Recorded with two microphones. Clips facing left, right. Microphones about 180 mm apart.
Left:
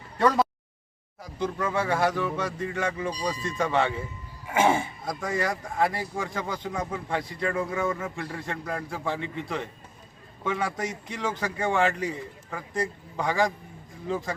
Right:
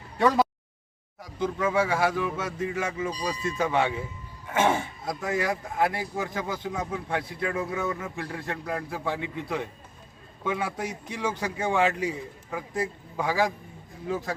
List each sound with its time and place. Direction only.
0.2 s a sound: centre (ahead or behind)
1.2 s speech: centre (ahead or behind)
4.5 s speech: 10° left (ahead or behind)
5.0 s a man's voice: 5° right (ahead or behind)